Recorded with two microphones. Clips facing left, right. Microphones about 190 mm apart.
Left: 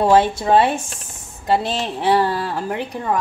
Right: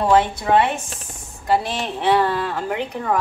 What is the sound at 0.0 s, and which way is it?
A woman's voice, 30° left (ahead or behind).